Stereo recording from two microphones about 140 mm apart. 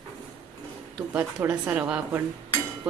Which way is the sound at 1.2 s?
10° right (ahead or behind).